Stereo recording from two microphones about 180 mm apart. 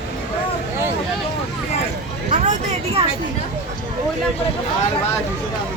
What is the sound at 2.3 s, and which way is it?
Speech, 45° right (ahead or behind).